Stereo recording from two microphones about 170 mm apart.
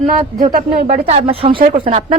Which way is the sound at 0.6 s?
40° right (ahead or behind).